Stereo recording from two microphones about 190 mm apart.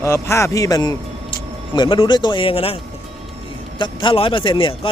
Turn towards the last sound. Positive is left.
turn(degrees=25)  # may be behind; listen again after turning